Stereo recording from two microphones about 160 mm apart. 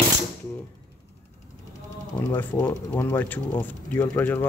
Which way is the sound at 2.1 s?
10° left (ahead or behind).